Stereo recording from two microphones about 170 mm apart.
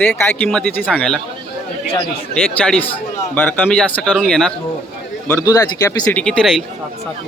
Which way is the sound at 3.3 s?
10° left (ahead or behind).